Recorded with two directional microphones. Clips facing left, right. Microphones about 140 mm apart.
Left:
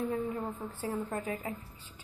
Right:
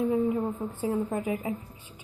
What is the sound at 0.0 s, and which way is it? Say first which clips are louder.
A woman's voice: right 8 dB; 25° right (ahead or behind).